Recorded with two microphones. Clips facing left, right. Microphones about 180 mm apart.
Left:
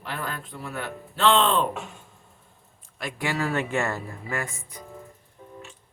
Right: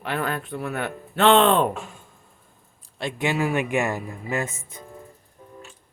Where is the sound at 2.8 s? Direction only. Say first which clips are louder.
Right 4 dB; 25° right (ahead or behind).